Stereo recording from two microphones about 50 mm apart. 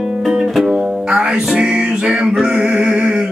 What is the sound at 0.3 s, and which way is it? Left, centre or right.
Music, centre.